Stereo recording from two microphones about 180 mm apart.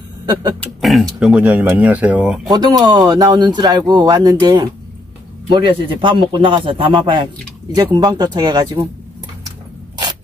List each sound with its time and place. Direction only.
0.3 s speech: 20° right (ahead or behind)
0.6 s speech: centre (ahead or behind)
2.5 s speech: 20° right (ahead or behind)